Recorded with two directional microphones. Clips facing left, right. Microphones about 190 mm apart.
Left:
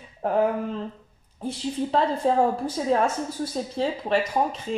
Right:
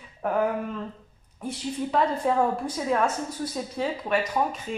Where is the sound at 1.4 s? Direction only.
30° left (ahead or behind).